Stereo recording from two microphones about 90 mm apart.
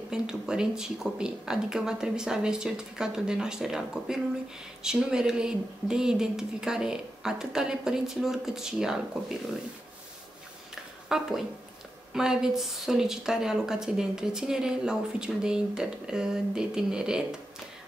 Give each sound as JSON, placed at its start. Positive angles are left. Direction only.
{"t": 0.1, "sound": "a woman's voice", "side_deg": -10}
{"t": 10.7, "sound": "a sound", "side_deg": -5}
{"t": 12.1, "sound": "a woman's voice", "side_deg": -5}